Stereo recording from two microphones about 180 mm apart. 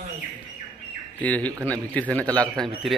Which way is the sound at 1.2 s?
10° left (ahead or behind).